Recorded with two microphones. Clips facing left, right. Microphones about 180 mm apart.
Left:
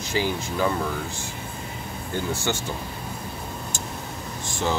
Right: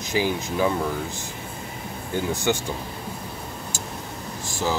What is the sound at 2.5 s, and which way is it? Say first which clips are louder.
Speech: right 6 dB; 15° right (ahead or behind).